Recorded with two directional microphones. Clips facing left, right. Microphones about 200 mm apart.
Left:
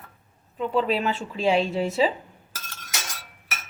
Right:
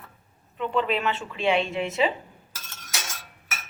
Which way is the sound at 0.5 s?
40° left (ahead or behind).